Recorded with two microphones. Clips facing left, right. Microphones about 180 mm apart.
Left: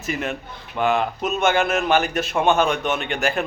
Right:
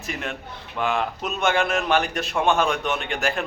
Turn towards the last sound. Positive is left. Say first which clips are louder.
# left 3 dB
turn(degrees=0)  # may be behind; listen again after turning